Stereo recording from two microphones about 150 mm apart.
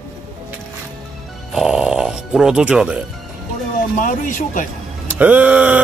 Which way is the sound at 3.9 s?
60° left (ahead or behind).